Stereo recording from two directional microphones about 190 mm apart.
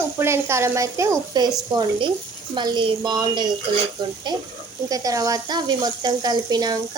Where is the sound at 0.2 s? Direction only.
15° right (ahead or behind).